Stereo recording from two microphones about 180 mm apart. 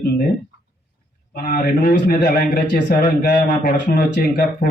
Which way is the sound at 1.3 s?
60° left (ahead or behind).